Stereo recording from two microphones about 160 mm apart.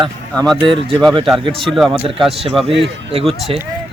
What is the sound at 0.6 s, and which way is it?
A man's voice, 30° right (ahead or behind).